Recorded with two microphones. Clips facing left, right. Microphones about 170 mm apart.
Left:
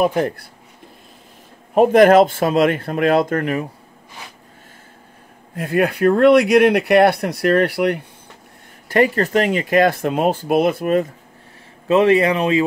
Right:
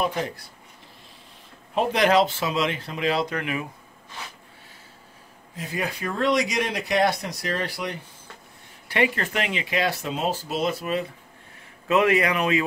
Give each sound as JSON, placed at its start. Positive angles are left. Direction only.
{"t": 0.0, "sound": "speech", "side_deg": 55}
{"t": 1.8, "sound": "speech", "side_deg": 50}
{"t": 5.6, "sound": "speech", "side_deg": 60}
{"t": 8.8, "sound": "speech", "side_deg": 45}
{"t": 11.9, "sound": "speech", "side_deg": 30}